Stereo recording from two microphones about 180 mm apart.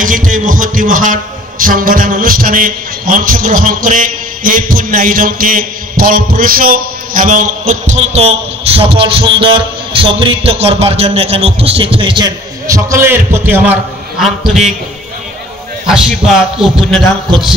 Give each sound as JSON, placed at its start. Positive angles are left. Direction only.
{"t": 0.0, "sound": "a man's voice", "side_deg": -50}
{"t": 14.2, "sound": "a man's voice", "side_deg": 0}
{"t": 15.9, "sound": "a man's voice", "side_deg": 0}